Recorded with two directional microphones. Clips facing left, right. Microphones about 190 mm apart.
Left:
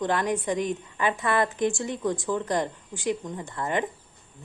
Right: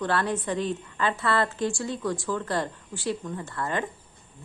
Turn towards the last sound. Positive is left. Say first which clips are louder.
# left 2 dB
turn(degrees=20)  # may be behind; listen again after turning